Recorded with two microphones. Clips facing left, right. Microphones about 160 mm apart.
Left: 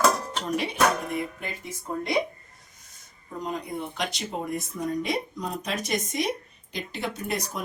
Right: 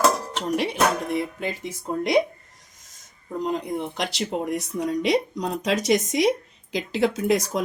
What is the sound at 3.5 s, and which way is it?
A woman's voice, 80° right.